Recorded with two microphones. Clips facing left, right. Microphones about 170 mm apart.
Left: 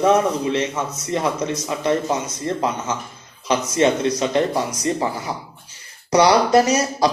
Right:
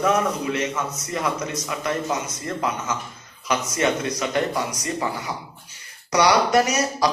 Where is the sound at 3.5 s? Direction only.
25° left (ahead or behind).